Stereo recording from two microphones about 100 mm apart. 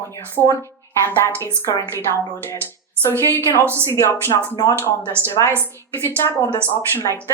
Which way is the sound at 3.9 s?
25° left (ahead or behind).